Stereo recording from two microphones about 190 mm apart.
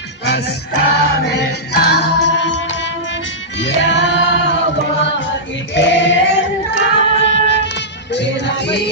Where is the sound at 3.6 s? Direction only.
70° left (ahead or behind).